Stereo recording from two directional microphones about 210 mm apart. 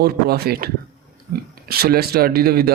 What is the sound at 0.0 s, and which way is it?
Speech, 50° right (ahead or behind).